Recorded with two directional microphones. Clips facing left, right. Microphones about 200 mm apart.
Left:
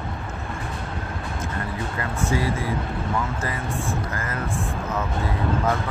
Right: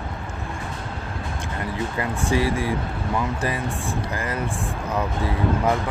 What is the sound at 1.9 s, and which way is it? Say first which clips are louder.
Speech: right 1 dB; 20° right (ahead or behind).